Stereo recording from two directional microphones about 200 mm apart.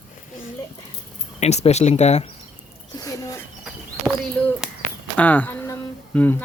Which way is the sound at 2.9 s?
15° left (ahead or behind).